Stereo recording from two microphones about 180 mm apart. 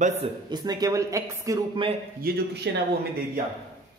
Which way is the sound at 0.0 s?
40° right (ahead or behind).